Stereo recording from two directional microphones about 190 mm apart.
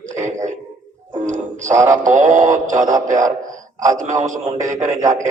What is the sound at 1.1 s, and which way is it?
Music, 40° right (ahead or behind).